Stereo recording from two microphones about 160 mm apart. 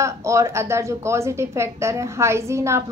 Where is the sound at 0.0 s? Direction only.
20° right (ahead or behind).